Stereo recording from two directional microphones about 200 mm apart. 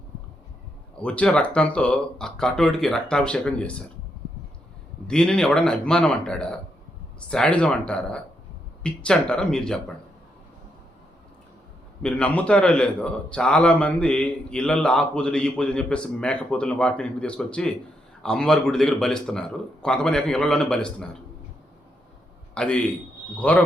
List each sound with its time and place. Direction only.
1.0 s a man's voice: 5° left (ahead or behind)
5.0 s a man's voice: 5° left (ahead or behind)
12.0 s a man's voice: 5° left (ahead or behind)
22.5 s a man's voice: 5° left (ahead or behind)